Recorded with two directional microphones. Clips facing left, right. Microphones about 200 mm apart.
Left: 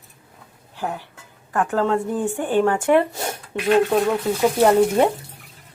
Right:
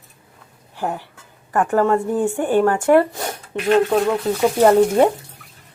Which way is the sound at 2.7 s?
10° left (ahead or behind).